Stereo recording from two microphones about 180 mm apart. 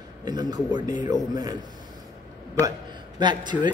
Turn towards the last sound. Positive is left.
turn(degrees=-25)  # may be behind; listen again after turning